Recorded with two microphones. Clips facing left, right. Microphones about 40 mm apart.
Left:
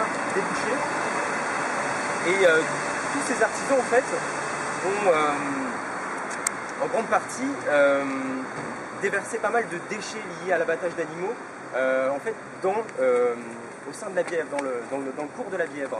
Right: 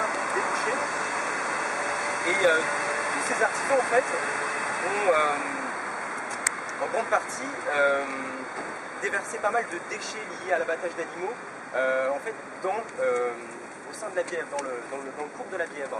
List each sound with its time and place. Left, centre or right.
0.0 s vehicle: centre
6.8 s speech: centre